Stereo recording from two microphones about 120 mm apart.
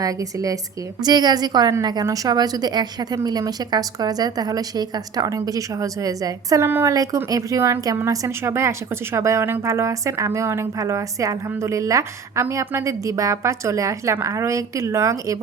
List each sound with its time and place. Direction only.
1.0 s a woman's voice: 35° right (ahead or behind)
6.7 s a woman's voice: 20° right (ahead or behind)
6.9 s a woman's voice: 30° right (ahead or behind)